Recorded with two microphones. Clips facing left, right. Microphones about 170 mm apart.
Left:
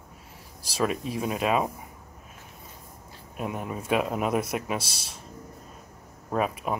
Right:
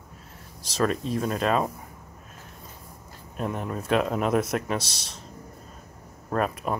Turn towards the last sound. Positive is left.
turn(degrees=5)  # may be behind; listen again after turning